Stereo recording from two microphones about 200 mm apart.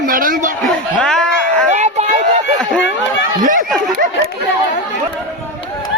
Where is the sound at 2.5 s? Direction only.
5° left (ahead or behind).